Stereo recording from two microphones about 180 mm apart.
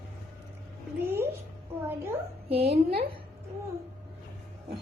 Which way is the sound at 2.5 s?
65° right (ahead or behind).